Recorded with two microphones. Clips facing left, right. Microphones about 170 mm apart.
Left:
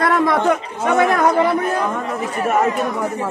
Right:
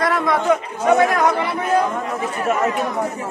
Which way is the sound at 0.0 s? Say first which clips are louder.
Left 3 dB; 55° left (ahead or behind).